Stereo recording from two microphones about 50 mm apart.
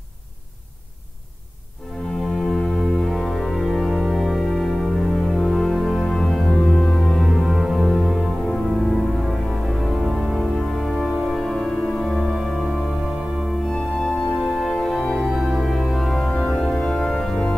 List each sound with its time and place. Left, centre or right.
2.3 s organ: centre
5.3 s music: centre
6.5 s organ: left
7.2 s music: centre
7.9 s organ: centre
8.8 s music: centre
10.4 s organ: centre
12.4 s music: centre
13.7 s organ: centre
15.1 s organ: centre